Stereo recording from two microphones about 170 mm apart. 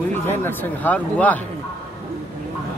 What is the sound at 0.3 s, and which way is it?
Speech, 10° left (ahead or behind).